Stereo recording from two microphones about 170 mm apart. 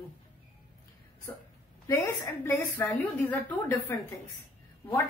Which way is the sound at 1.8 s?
15° left (ahead or behind).